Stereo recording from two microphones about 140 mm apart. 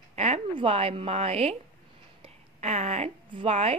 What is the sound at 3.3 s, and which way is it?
Speech, 40° right (ahead or behind).